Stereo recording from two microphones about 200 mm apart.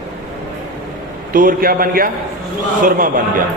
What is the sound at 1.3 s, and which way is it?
A man's voice, 45° right (ahead or behind).